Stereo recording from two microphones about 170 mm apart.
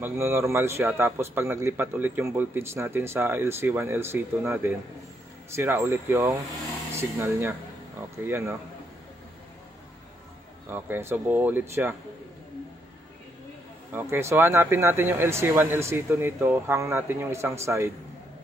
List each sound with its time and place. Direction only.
0.0 s a man's voice: 15° right (ahead or behind)
10.7 s a man's voice: 15° right (ahead or behind)
13.9 s a man's voice: 15° right (ahead or behind)